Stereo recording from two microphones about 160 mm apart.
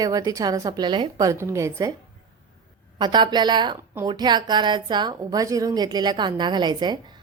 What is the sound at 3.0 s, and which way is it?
A woman's voice, 25° right (ahead or behind).